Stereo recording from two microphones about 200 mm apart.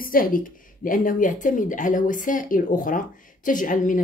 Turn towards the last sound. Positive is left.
turn(degrees=40)  # may be behind; listen again after turning